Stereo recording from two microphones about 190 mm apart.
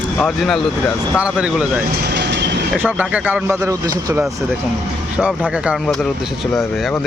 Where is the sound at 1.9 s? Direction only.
60° right (ahead or behind).